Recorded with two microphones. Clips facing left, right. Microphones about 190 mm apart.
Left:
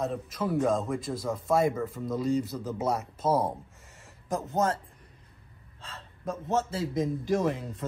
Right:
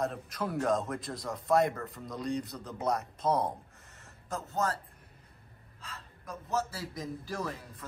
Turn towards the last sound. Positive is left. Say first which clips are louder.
# left 10 dB
turn(degrees=20)  # may be behind; listen again after turning